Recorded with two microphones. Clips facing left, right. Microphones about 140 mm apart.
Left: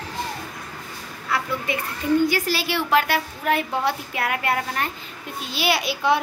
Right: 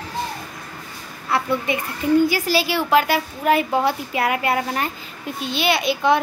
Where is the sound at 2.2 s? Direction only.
5° right (ahead or behind).